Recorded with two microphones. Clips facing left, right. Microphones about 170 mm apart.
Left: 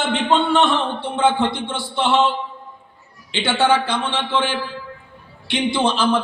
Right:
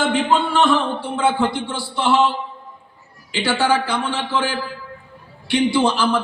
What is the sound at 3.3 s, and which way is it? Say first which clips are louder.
A man's voice: left 1 dB; 25° left (ahead or behind).